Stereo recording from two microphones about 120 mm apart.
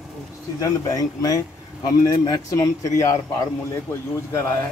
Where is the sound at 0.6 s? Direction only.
30° left (ahead or behind).